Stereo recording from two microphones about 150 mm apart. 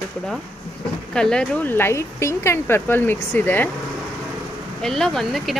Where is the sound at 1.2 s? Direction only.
5° left (ahead or behind).